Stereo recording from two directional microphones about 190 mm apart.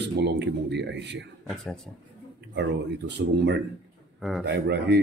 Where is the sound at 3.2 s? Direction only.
65° right (ahead or behind).